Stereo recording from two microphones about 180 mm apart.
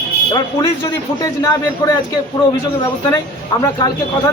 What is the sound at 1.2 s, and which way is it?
Speech, 20° left (ahead or behind).